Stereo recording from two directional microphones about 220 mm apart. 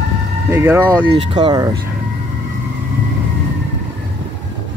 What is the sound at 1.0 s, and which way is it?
Speech, 20° right (ahead or behind).